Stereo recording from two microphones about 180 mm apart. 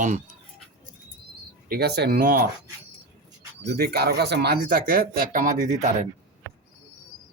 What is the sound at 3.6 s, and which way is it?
Speech, 65° right (ahead or behind).